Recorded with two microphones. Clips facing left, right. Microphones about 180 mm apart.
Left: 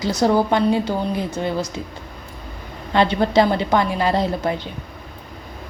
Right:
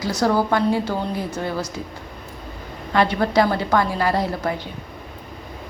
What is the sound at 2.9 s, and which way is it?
A woman's voice, 25° left (ahead or behind).